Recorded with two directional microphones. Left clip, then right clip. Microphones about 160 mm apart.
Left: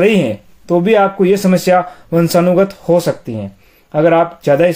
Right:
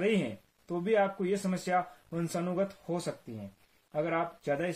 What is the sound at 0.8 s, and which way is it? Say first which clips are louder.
Speech: left 17 dB; 30° left (ahead or behind).